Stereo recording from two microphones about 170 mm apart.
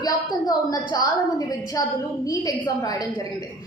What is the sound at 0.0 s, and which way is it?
A woman's voice, 25° left (ahead or behind).